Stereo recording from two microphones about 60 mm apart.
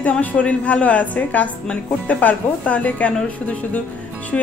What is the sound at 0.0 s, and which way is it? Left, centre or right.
A woman's voice, left.